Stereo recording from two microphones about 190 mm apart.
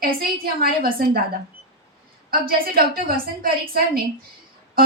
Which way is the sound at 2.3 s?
50° right (ahead or behind).